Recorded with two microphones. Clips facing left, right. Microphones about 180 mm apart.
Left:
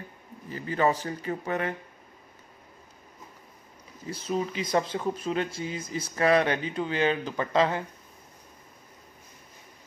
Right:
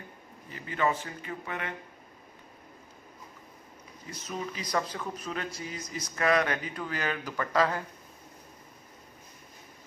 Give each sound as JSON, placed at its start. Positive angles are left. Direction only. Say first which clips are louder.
{"t": 0.5, "sound": "a man's voice", "louder": "left 4 dB", "side_deg": 35}
{"t": 4.1, "sound": "speech", "louder": "left 7 dB", "side_deg": 30}